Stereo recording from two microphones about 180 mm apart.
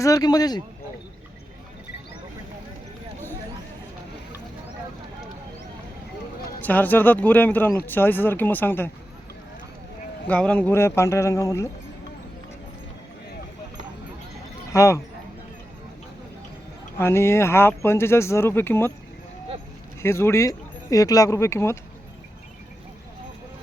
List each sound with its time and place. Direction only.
0.0 s speech: 20° left (ahead or behind)
6.6 s speech: 10° left (ahead or behind)
10.2 s speech: 5° left (ahead or behind)
14.7 s speech: 15° left (ahead or behind)
17.0 s speech: 15° left (ahead or behind)
20.0 s speech: 15° left (ahead or behind)